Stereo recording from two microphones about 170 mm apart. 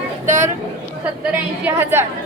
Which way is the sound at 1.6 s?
15° right (ahead or behind).